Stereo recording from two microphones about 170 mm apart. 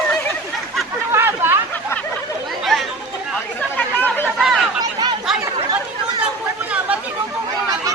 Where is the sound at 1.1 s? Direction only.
15° right (ahead or behind).